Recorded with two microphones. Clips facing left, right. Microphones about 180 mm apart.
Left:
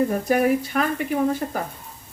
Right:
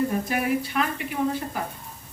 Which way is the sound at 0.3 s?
45° left (ahead or behind).